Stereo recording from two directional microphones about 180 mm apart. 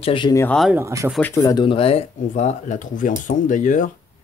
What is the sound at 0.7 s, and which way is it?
Speech, 15° right (ahead or behind).